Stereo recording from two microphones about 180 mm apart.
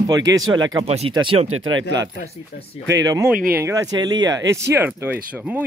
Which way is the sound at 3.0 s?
20° right (ahead or behind).